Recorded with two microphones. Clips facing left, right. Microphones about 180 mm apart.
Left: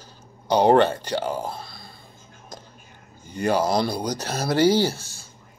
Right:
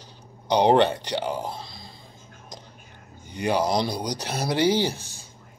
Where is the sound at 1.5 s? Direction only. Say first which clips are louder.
Even; 55° left (ahead or behind).